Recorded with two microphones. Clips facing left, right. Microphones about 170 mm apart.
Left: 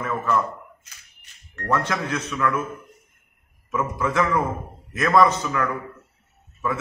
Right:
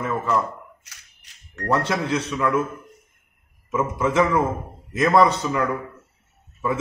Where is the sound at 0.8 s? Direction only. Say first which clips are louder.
Right 1 dB; 75° right (ahead or behind).